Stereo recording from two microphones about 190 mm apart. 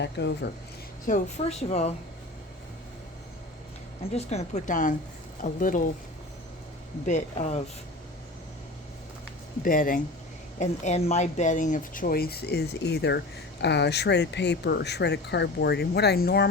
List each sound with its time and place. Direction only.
0.0 s speech: 65° left (ahead or behind)
1.0 s a woman's voice: 40° left (ahead or behind)
4.0 s a woman's voice: 35° left (ahead or behind)
7.0 s a woman's voice: 40° left (ahead or behind)
9.6 s speech: 45° left (ahead or behind)
10.6 s speech: 35° left (ahead or behind); by 16.5 s 55° left (ahead or behind)